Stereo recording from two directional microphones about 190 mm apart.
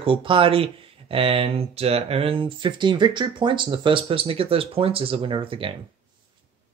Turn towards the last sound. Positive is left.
turn(degrees=-25)  # may be behind; listen again after turning